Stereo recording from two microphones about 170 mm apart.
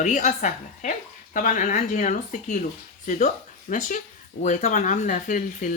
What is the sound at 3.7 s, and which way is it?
Speech, 45° left (ahead or behind).